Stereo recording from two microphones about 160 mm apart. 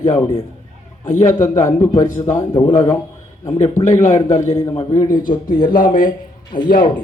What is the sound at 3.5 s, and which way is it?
A man's voice, 45° left (ahead or behind).